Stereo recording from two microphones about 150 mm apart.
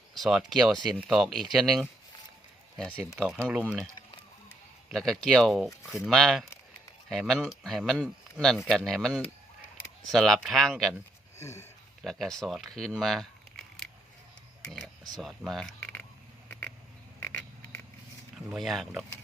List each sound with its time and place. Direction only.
0.1 s speech: centre (ahead or behind)
4.9 s speech: centre (ahead or behind)
11.3 s a sound: 20° left (ahead or behind)
12.0 s speech: centre (ahead or behind)
15.2 s speech: centre (ahead or behind)
16.5 s a sound: 10° left (ahead or behind)
18.5 s speech: centre (ahead or behind)